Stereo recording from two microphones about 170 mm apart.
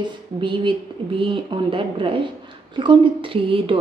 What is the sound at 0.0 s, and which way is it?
Speech, 30° right (ahead or behind).